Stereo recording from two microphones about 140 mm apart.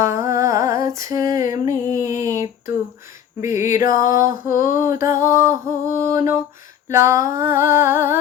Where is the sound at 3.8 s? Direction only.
75° left (ahead or behind).